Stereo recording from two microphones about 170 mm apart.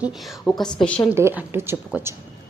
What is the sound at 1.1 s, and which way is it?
Speech, 15° right (ahead or behind).